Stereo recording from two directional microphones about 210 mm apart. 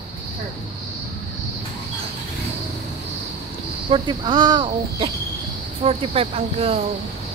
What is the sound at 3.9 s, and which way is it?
Speech, 20° right (ahead or behind).